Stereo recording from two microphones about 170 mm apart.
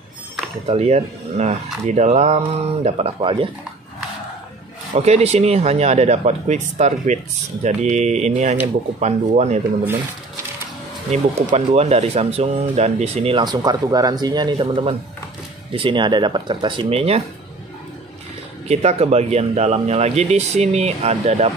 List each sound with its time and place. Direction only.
0.7 s speech: 40° right (ahead or behind)
4.9 s speech: 40° right (ahead or behind)
11.5 s speech: 40° right (ahead or behind)
18.7 s speech: 40° right (ahead or behind)